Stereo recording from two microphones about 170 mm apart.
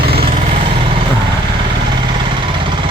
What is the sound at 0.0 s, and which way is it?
Vehicle, 65° right (ahead or behind).